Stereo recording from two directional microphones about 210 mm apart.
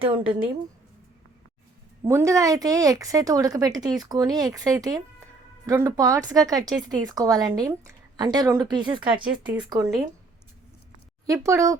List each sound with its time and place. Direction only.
0.0 s a woman's voice: 25° right (ahead or behind)
2.0 s speech: 15° right (ahead or behind)
11.3 s speech: 15° right (ahead or behind)